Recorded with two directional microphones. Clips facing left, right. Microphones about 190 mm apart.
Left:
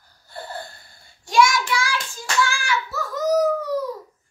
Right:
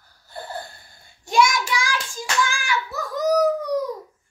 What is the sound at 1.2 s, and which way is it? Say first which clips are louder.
Child singing: left 1 dB; 20° right (ahead or behind).